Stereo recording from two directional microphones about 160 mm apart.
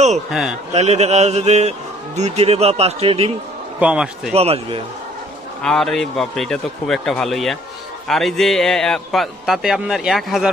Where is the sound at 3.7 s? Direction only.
5° right (ahead or behind).